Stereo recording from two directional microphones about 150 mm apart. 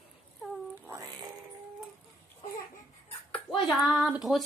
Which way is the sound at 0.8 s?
20° right (ahead or behind).